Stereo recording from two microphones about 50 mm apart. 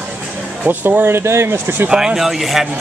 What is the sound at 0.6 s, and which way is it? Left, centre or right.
Speech, right.